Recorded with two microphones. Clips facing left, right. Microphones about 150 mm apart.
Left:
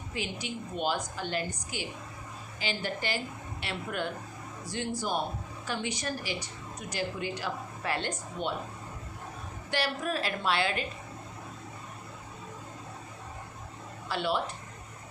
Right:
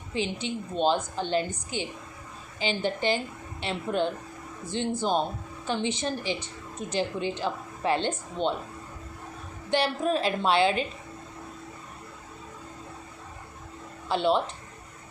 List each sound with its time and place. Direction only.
0.4 s a woman's voice: 25° right (ahead or behind)
9.6 s a woman's voice: 25° right (ahead or behind)
14.1 s a woman's voice: 25° right (ahead or behind)